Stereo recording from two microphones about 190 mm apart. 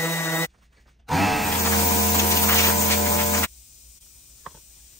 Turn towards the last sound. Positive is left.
turn(degrees=15)  # may be behind; listen again after turning